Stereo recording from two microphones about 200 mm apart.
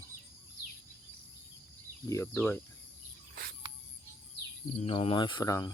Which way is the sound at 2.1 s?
15° left (ahead or behind).